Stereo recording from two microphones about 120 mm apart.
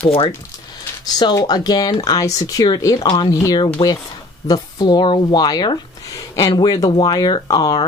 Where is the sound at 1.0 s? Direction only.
35° left (ahead or behind).